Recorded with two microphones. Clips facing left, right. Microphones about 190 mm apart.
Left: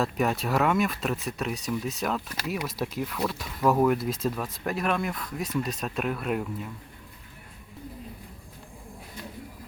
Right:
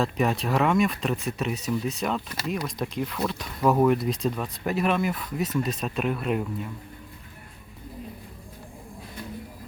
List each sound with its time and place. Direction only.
0.0 s speech: centre (ahead or behind)